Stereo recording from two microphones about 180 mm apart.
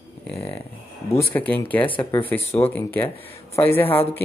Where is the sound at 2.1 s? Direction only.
10° left (ahead or behind).